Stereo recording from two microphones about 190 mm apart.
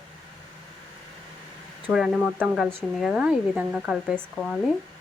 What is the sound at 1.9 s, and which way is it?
Speech, 5° right (ahead or behind).